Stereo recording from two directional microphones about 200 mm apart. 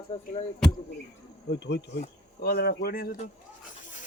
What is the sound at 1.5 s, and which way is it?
Insect, 60° left (ahead or behind).